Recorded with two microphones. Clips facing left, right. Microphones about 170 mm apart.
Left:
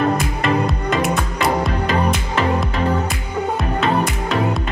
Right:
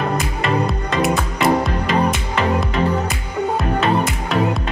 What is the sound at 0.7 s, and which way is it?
Music, centre (ahead or behind).